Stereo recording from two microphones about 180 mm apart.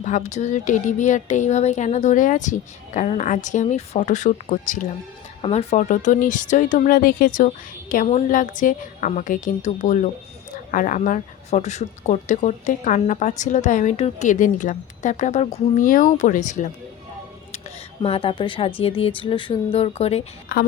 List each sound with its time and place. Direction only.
0.0 s speech: 40° left (ahead or behind)
18.0 s a woman's voice: 30° left (ahead or behind)
20.5 s a woman's voice: 55° left (ahead or behind)